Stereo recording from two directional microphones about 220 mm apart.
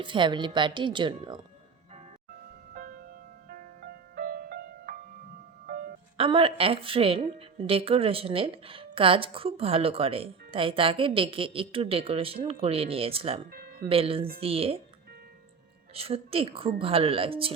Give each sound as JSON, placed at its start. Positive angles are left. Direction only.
{"t": 0.0, "sound": "a woman's voice", "side_deg": -20}
{"t": 2.7, "sound": "music", "side_deg": -40}
{"t": 6.1, "sound": "a woman's voice", "side_deg": -25}
{"t": 13.5, "sound": "music", "side_deg": -45}
{"t": 13.8, "sound": "a woman's voice", "side_deg": -25}
{"t": 16.0, "sound": "a woman's voice", "side_deg": -25}